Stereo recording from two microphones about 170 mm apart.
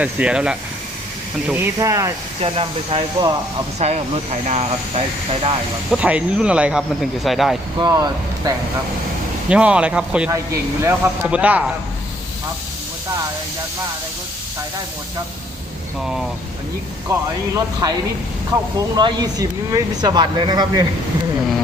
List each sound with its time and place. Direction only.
0.0 s speech: 5° right (ahead or behind)
2.4 s speech: 35° right (ahead or behind)
3.8 s speech: 40° right (ahead or behind)
5.9 s speech: 5° right (ahead or behind)
7.8 s speech: 30° right (ahead or behind)
9.5 s speech: 5° right (ahead or behind)
10.3 s speech: 15° right (ahead or behind)
17.1 s speech: 20° right (ahead or behind)
18.8 s speech: 25° right (ahead or behind)